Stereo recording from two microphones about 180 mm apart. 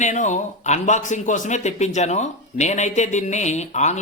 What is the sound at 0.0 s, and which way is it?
Speech, 40° left (ahead or behind).